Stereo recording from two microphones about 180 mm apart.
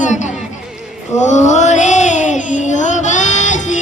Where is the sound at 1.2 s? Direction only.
40° left (ahead or behind).